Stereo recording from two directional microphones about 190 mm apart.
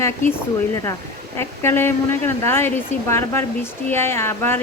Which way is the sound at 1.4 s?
10° left (ahead or behind).